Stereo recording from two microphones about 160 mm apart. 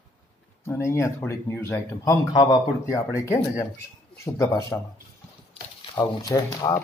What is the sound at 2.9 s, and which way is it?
A man's voice, 20° left (ahead or behind).